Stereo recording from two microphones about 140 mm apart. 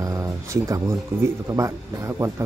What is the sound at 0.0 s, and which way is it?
Speech, 25° right (ahead or behind).